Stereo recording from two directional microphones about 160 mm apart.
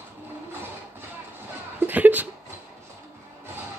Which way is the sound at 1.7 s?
10° right (ahead or behind).